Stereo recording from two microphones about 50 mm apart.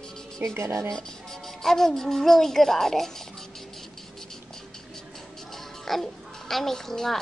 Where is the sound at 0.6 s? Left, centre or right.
Right.